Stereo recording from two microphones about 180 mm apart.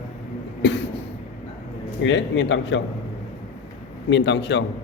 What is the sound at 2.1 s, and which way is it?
Speech, 90° left.